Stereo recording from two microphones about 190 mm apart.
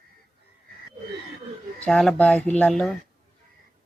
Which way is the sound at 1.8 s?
5° left (ahead or behind).